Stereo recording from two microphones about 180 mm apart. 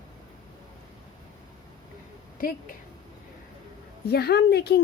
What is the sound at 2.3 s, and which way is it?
Speech, 50° left (ahead or behind).